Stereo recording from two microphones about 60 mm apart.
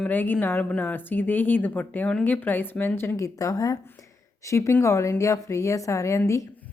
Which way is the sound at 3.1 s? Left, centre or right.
Left.